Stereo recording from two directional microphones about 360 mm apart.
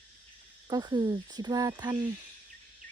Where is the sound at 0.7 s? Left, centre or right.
Centre.